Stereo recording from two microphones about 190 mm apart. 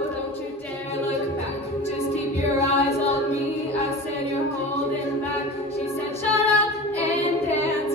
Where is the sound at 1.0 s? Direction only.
35° left (ahead or behind).